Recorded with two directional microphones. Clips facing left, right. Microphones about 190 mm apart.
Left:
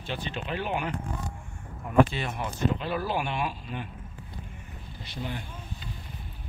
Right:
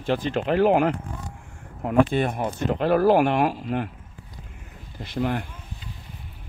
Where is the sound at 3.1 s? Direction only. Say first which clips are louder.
Right 11 dB; 90° right.